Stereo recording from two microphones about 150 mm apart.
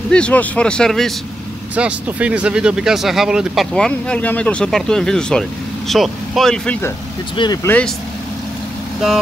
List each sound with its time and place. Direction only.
0.1 s speech: 10° left (ahead or behind)
1.8 s speech: 10° right (ahead or behind); by 6.9 s 10° left (ahead or behind)
7.3 s speech: 30° left (ahead or behind)
7.6 s speech: 10° left (ahead or behind)